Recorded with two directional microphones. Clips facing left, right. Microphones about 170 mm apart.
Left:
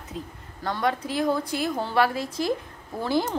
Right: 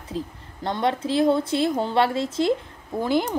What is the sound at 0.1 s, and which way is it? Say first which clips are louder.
Speech: right 7 dB; 30° right (ahead or behind).